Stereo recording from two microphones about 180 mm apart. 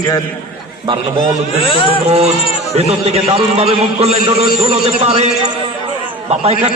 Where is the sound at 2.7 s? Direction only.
35° right (ahead or behind).